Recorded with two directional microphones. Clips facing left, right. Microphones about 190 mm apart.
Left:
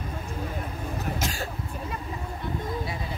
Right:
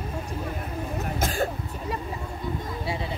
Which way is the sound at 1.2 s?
50° right (ahead or behind).